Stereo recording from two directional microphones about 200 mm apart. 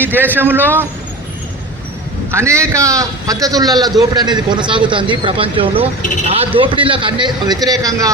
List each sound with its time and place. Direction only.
0.0 s a man's voice: 10° right (ahead or behind)
2.3 s a man's voice: 15° right (ahead or behind)